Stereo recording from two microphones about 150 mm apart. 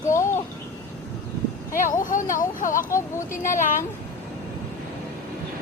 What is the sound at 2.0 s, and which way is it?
Speech, 60° left (ahead or behind).